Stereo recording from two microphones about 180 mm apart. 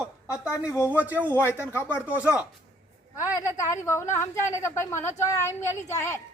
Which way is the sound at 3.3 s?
15° left (ahead or behind).